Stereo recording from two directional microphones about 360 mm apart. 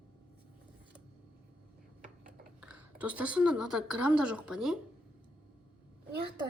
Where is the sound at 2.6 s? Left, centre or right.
Centre.